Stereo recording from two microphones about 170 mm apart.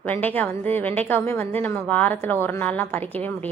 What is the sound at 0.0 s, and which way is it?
A woman's voice, 10° left (ahead or behind).